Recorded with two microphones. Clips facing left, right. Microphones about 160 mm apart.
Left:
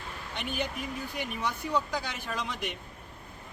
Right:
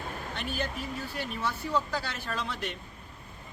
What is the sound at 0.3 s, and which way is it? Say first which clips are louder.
A man's voice: left 2 dB; 15° left (ahead or behind).